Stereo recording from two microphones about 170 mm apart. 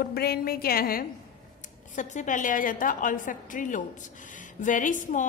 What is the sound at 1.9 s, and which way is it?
A woman's voice, 45° left (ahead or behind).